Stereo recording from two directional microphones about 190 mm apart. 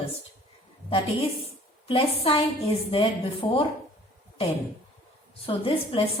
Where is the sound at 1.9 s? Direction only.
30° left (ahead or behind).